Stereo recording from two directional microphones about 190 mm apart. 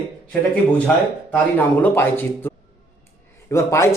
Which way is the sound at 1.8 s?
10° left (ahead or behind).